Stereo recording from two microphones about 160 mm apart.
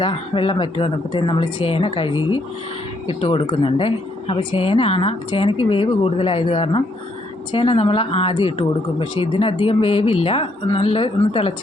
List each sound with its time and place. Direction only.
0.0 s a woman's voice: 30° left (ahead or behind)